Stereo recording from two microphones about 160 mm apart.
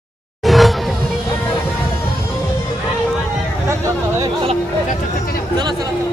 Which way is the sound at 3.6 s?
20° right (ahead or behind).